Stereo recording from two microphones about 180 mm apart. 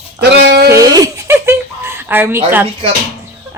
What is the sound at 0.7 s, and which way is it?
Giggle, 20° right (ahead or behind).